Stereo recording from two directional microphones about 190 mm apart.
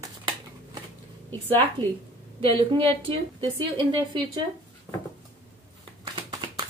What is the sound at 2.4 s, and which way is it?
A woman's voice, 30° right (ahead or behind).